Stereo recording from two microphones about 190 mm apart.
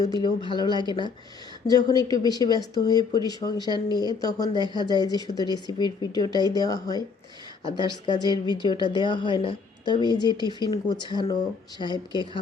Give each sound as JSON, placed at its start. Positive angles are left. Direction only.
{"t": 0.0, "sound": "speech", "side_deg": 20}